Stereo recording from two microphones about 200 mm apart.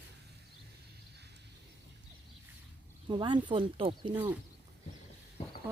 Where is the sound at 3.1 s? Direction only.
25° right (ahead or behind).